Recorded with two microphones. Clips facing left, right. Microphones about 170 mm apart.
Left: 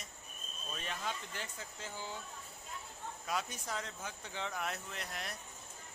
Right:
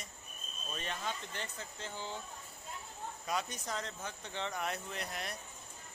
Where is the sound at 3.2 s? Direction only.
5° left (ahead or behind).